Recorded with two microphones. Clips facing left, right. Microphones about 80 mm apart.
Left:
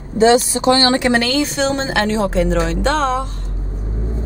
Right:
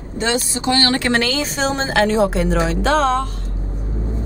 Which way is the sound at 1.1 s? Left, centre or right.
Centre.